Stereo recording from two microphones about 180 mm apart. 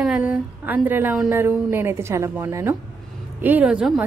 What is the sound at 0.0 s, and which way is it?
A woman's voice, 5° right (ahead or behind).